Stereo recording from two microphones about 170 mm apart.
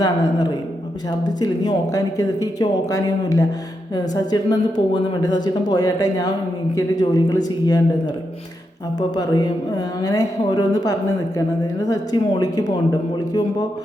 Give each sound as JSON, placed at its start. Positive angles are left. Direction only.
{"t": 1.4, "sound": "speech", "side_deg": 20}